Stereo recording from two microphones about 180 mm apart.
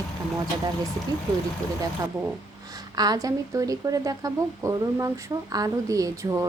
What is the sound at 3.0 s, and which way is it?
Speech, 20° right (ahead or behind).